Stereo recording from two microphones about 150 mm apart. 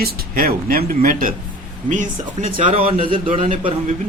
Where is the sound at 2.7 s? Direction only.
40° right (ahead or behind).